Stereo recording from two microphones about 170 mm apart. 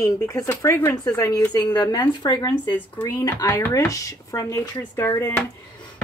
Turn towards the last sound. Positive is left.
turn(degrees=10)  # may be behind; listen again after turning